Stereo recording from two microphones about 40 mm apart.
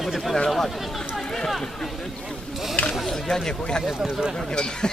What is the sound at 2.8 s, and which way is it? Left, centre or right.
Speech, left.